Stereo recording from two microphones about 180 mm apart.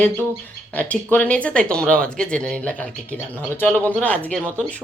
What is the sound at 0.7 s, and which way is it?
Stir, 10° left (ahead or behind).